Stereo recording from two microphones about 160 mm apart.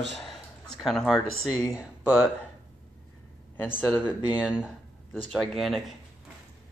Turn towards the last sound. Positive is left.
turn(degrees=0)  # may be behind; listen again after turning